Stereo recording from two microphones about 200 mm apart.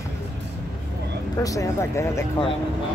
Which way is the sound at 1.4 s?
15° left (ahead or behind).